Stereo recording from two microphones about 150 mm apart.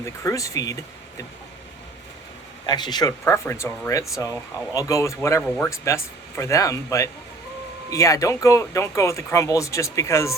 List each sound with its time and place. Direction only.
0.0 s speech: 20° left (ahead or behind)
2.6 s speech: 30° left (ahead or behind)